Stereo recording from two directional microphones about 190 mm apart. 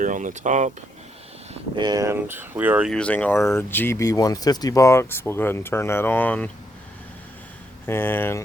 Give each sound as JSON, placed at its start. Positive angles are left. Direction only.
{"t": 0.0, "sound": "speech", "side_deg": -45}
{"t": 1.7, "sound": "speech", "side_deg": -20}
{"t": 2.9, "sound": "speech", "side_deg": 5}
{"t": 7.9, "sound": "speech", "side_deg": 10}